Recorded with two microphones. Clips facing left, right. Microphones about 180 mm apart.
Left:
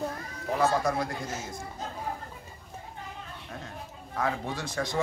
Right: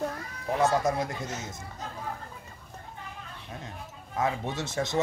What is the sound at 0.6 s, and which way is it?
Speech, 20° right (ahead or behind).